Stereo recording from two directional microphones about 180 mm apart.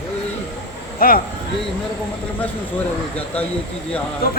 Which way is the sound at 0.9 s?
55° left (ahead or behind).